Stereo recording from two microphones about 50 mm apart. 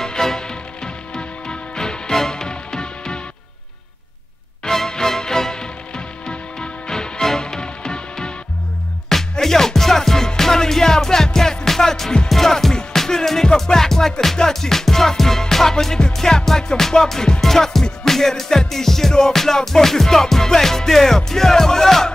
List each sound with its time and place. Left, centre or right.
0.0 s music: centre
4.6 s music: centre
9.3 s music: centre